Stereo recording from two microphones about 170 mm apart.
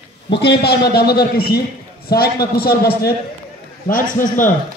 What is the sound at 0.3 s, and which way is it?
A man's voice, 75° left (ahead or behind).